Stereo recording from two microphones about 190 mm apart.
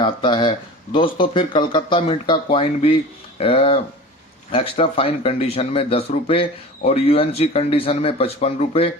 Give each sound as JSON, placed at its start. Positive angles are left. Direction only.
{"t": 0.0, "sound": "speech", "side_deg": 25}